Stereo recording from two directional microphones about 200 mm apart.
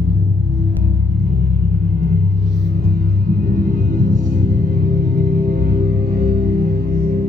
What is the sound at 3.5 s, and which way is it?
Music, 45° right (ahead or behind).